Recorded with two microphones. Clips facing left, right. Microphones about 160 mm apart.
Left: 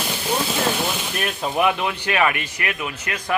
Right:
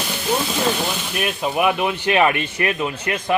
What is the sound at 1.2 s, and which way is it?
Speech, 5° right (ahead or behind).